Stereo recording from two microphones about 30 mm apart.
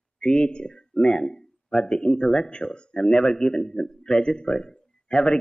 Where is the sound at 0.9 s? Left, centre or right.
Centre.